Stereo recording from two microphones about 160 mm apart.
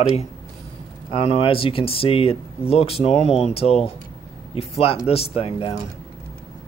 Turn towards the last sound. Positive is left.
turn(degrees=40)  # may be behind; listen again after turning